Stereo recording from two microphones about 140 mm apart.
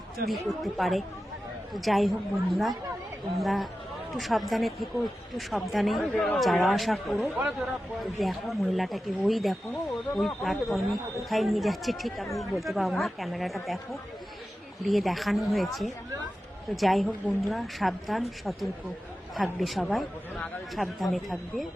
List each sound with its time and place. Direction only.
0.3 s speech: centre (ahead or behind)
14.8 s speech: centre (ahead or behind)